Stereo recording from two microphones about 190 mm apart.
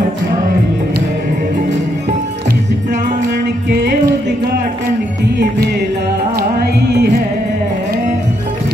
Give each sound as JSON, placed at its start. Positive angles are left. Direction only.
{"t": 6.3, "sound": "music", "side_deg": -60}